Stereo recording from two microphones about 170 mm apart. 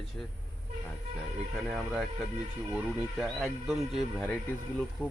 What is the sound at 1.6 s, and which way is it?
Speech, centre (ahead or behind).